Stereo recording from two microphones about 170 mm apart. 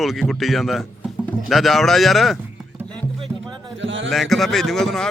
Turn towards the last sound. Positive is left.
turn(degrees=0)  # may be behind; listen again after turning